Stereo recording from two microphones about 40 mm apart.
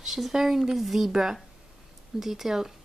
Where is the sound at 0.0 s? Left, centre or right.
Centre.